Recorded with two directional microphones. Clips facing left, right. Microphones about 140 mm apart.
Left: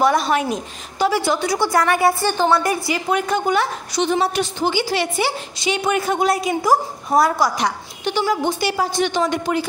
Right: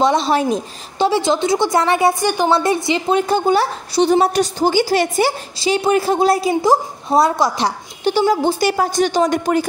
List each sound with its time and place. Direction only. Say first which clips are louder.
0.0 s a woman's voice: right 2 dB; 25° right (ahead or behind)
2.5 s a woman's voice: right 3 dB; 25° right (ahead or behind); by 9.7 s 45° right (ahead or behind)